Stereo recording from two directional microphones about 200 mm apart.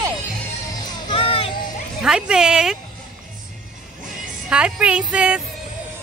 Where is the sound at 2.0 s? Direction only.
5° right (ahead or behind).